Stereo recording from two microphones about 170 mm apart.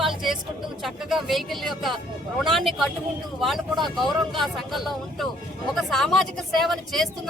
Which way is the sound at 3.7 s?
25° right (ahead or behind).